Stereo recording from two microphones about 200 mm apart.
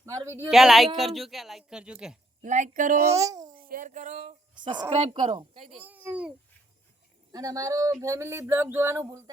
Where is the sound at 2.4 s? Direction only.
40° right (ahead or behind).